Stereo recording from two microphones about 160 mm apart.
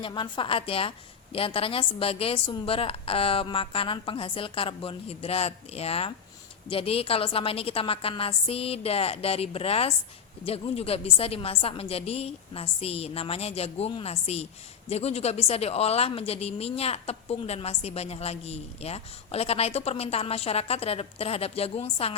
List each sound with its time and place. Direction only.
0.0 s a woman's voice: 30° left (ahead or behind)